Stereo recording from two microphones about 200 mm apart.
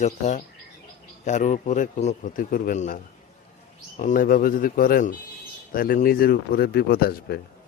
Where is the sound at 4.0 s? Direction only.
40° left (ahead or behind).